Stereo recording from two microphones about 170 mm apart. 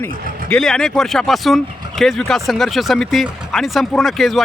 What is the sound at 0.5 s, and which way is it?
Speech, 5° left (ahead or behind).